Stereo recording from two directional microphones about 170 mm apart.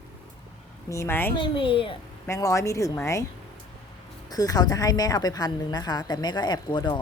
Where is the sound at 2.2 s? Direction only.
15° left (ahead or behind).